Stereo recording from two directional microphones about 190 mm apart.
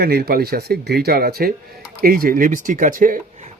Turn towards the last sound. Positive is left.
turn(degrees=-45)  # may be behind; listen again after turning